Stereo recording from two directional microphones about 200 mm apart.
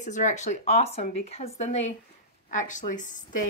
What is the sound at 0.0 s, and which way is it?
A woman's voice, 35° left (ahead or behind).